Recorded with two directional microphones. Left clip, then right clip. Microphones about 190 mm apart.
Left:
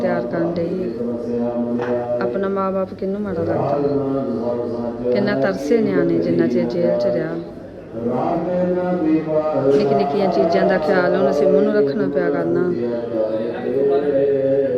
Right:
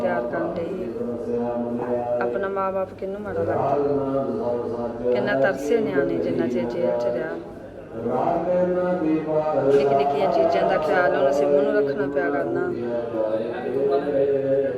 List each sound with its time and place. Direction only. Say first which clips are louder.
0.0 s speech: left 3 dB; centre (ahead or behind)
5.0 s speech: left 2 dB; 5° left (ahead or behind)
9.6 s speech: left 1 dB; 5° left (ahead or behind)